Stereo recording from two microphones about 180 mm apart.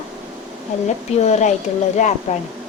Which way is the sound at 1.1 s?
40° left (ahead or behind).